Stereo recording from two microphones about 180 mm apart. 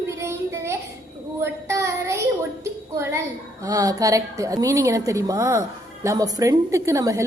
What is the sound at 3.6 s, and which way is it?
A woman's voice, 20° right (ahead or behind).